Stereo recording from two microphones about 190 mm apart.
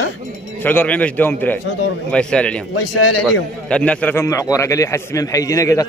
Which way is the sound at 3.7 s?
5° left (ahead or behind).